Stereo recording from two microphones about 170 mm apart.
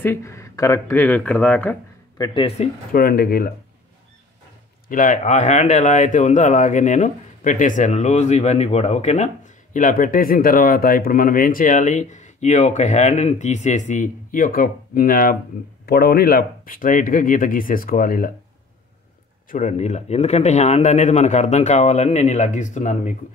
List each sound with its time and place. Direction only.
0.0 s speech: 15° left (ahead or behind)
2.1 s speech: 25° left (ahead or behind)
2.4 s a man's voice: 40° left (ahead or behind)
2.9 s speech: 60° left (ahead or behind)
4.8 s speech: 50° left (ahead or behind)
19.5 s a man's voice: 45° left (ahead or behind)